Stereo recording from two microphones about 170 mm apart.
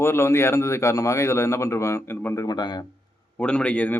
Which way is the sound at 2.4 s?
25° left (ahead or behind).